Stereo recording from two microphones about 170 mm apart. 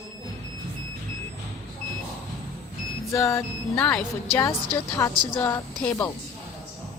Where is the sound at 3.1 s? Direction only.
15° left (ahead or behind).